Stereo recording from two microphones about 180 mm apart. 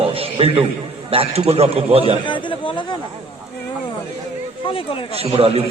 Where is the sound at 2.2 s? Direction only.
25° left (ahead or behind).